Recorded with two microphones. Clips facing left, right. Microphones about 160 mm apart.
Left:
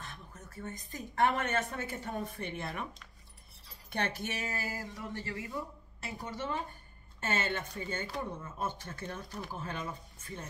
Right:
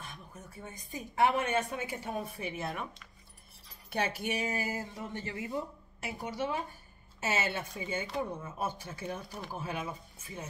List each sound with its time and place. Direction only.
0.0 s a woman's voice: 10° right (ahead or behind)
6.0 s a woman's voice: 10° right (ahead or behind)